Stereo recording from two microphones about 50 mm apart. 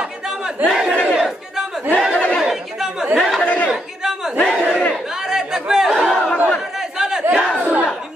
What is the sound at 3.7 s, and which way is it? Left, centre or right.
Chatter, centre.